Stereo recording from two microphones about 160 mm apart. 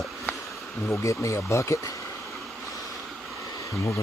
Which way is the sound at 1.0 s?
20° left (ahead or behind).